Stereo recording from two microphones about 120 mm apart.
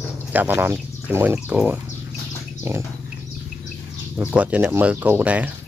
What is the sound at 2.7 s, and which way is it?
Bird, 20° right (ahead or behind).